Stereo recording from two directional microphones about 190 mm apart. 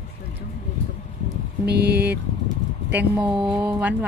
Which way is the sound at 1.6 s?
60° right (ahead or behind).